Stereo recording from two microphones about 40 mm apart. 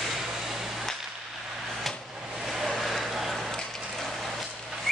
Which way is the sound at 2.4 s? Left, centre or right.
Centre.